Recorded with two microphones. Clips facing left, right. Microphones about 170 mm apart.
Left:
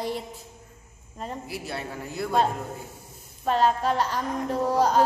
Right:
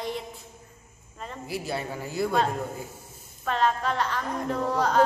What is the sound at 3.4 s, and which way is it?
A woman's voice, 35° left (ahead or behind).